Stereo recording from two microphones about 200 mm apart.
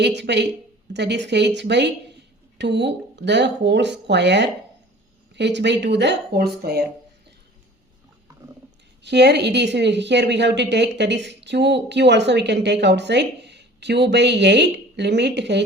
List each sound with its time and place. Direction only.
0.2 s a woman's voice: 60° right (ahead or behind)
9.0 s a woman's voice: 55° right (ahead or behind)